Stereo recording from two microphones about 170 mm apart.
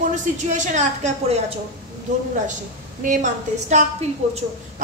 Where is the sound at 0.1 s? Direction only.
45° right (ahead or behind).